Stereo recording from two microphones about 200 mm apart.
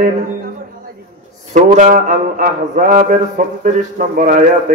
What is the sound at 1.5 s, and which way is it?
Mantra, 35° right (ahead or behind).